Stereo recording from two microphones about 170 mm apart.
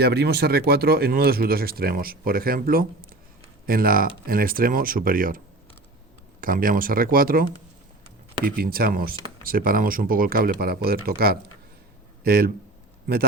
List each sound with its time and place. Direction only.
0.0 s speech: 75° right (ahead or behind); by 5.4 s 55° right (ahead or behind)
6.4 s speech: 55° right (ahead or behind)
8.4 s speech: 60° right (ahead or behind)